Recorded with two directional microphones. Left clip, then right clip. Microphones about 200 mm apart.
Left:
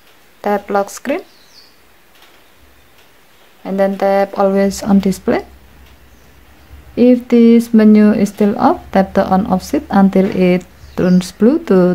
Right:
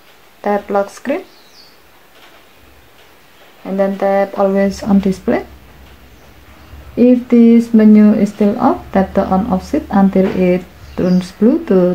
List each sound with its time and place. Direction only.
0.4 s speech: 30° left (ahead or behind)
3.6 s speech: 35° left (ahead or behind)
7.0 s speech: 35° left (ahead or behind)